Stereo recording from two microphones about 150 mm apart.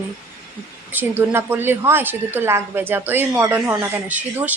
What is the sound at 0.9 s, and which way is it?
A woman's voice, 15° right (ahead or behind).